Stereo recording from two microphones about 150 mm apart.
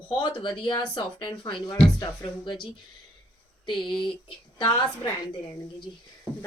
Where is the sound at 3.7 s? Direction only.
30° left (ahead or behind).